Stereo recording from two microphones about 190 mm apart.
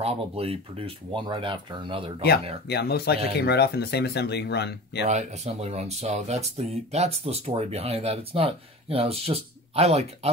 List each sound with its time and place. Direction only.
0.0 s speech: 30° right (ahead or behind)
2.7 s speech: 60° left (ahead or behind)
5.0 s speech: 35° right (ahead or behind)